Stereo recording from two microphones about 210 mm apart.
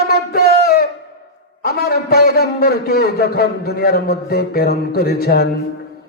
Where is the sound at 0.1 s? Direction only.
45° left (ahead or behind).